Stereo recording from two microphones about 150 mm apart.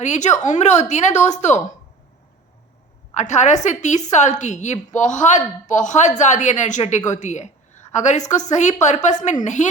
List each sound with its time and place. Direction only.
0.0 s a woman's voice: 50° left (ahead or behind)
3.2 s a woman's voice: 50° left (ahead or behind)